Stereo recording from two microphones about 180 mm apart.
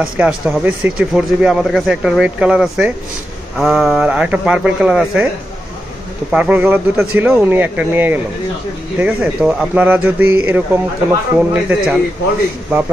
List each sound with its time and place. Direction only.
0.0 s speech: 5° right (ahead or behind)
6.3 s a man's voice: 10° right (ahead or behind)